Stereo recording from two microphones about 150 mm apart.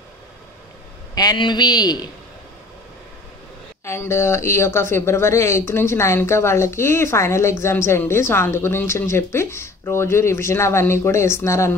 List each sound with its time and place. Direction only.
1.1 s a man's voice: 25° left (ahead or behind)
3.8 s speech: 15° left (ahead or behind)